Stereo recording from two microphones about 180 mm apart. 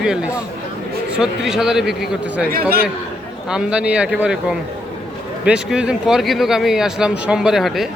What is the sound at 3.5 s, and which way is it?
Speech, 5° right (ahead or behind).